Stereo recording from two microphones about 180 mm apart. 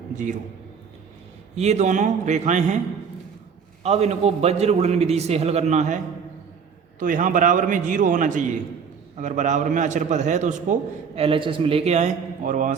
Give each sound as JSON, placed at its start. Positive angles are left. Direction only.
{"t": 1.5, "sound": "a man's voice", "side_deg": -40}
{"t": 3.8, "sound": "a man's voice", "side_deg": -35}
{"t": 7.0, "sound": "a man's voice", "side_deg": -50}